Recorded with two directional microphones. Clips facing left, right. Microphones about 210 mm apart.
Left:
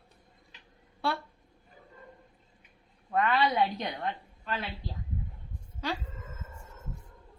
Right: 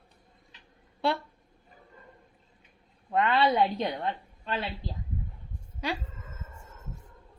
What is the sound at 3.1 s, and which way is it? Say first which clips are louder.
A woman's voice: right 2 dB; 25° right (ahead or behind).